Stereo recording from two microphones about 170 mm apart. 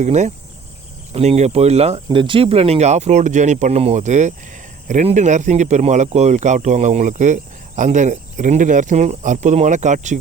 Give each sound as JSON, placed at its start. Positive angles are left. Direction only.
{"t": 0.0, "sound": "speech", "side_deg": -45}